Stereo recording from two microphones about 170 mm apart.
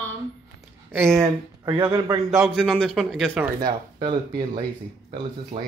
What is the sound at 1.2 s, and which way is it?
Speech, 20° right (ahead or behind).